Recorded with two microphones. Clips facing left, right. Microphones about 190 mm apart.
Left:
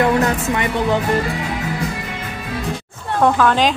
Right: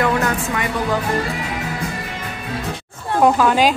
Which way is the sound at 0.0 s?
25° left (ahead or behind).